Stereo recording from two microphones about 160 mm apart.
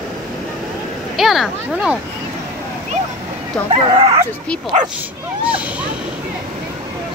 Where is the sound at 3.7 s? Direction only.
35° right (ahead or behind).